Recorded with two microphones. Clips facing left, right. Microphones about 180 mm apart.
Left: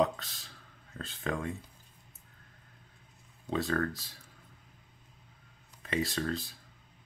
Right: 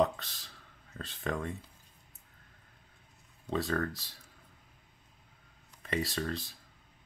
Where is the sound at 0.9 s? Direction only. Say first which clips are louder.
Even; centre (ahead or behind).